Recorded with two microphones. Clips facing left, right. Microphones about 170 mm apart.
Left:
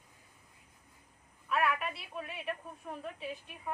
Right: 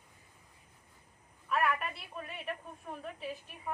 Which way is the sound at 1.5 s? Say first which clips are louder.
Even; centre (ahead or behind).